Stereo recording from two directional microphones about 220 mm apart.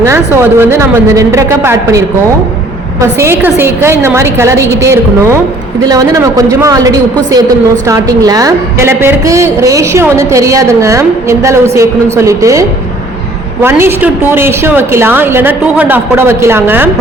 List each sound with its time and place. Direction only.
0.0 s a woman's voice: 10° right (ahead or behind)
3.2 s a woman's voice: 10° right (ahead or behind)